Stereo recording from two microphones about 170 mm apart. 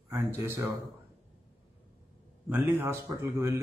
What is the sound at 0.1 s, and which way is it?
Speech, 15° right (ahead or behind).